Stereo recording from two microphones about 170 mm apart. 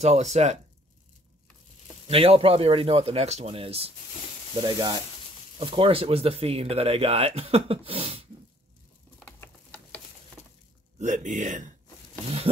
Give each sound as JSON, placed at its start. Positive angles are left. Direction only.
{"t": 0.0, "sound": "speech", "side_deg": -40}
{"t": 2.0, "sound": "speech", "side_deg": -35}
{"t": 9.2, "sound": "a sound", "side_deg": 10}
{"t": 11.0, "sound": "speech", "side_deg": -45}